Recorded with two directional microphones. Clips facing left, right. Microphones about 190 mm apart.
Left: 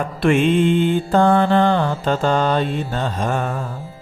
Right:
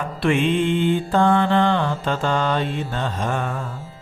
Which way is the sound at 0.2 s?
45° left (ahead or behind).